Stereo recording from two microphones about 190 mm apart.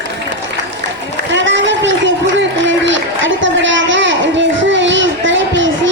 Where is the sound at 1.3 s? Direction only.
75° right (ahead or behind).